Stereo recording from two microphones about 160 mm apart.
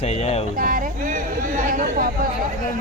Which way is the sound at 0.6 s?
60° right (ahead or behind).